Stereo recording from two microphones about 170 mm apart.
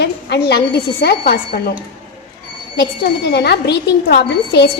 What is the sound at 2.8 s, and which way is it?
A woman's voice, 75° left (ahead or behind).